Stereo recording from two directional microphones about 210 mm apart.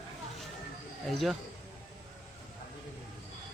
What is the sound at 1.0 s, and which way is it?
Speech, centre (ahead or behind).